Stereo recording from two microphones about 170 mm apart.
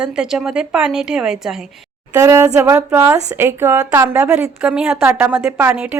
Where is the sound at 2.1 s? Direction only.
20° right (ahead or behind).